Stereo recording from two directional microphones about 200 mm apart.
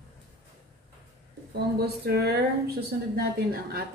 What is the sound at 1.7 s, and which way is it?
Speech, 50° right (ahead or behind).